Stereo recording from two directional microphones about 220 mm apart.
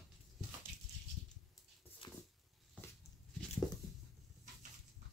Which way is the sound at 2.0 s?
20° left (ahead or behind).